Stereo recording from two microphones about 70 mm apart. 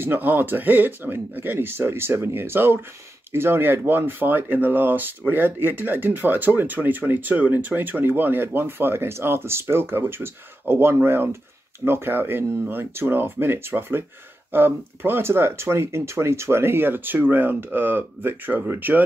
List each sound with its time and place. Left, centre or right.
0.0 s speech: right